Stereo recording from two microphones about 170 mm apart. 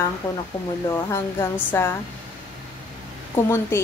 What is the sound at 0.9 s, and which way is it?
A woman's voice, 15° left (ahead or behind).